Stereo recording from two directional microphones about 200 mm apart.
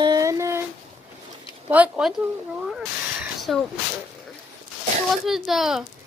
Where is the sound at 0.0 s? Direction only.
20° right (ahead or behind).